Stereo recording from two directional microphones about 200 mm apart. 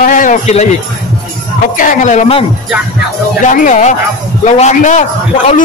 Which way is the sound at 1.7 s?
40° left (ahead or behind).